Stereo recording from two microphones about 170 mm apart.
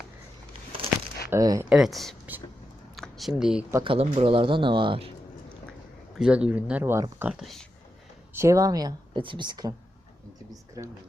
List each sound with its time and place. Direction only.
1.3 s speech: 20° right (ahead or behind)
1.7 s speech: centre (ahead or behind)
2.9 s a sound: centre (ahead or behind)
3.8 s speech: 40° right (ahead or behind)
6.1 s speech: 5° right (ahead or behind)
8.3 s speech: 15° right (ahead or behind)